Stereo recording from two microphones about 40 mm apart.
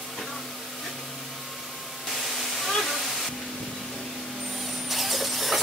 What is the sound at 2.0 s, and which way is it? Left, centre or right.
Waterfall, centre.